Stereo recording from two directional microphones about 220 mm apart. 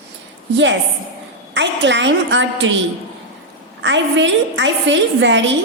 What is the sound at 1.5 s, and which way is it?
A woman's voice, 55° right (ahead or behind).